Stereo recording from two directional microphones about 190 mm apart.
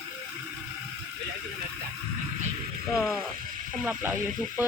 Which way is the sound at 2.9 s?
5° left (ahead or behind).